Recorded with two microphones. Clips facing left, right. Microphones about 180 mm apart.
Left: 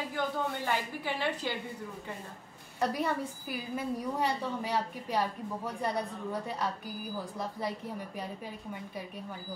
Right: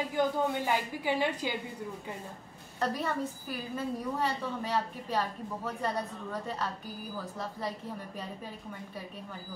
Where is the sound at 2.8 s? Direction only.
10° left (ahead or behind).